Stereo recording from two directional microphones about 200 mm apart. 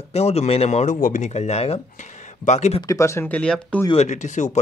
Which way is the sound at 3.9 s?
35° left (ahead or behind).